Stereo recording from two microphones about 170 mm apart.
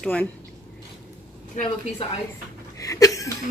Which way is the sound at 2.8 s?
20° left (ahead or behind).